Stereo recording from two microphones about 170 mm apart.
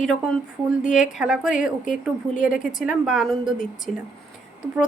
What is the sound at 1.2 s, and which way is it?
Speech, 5° right (ahead or behind).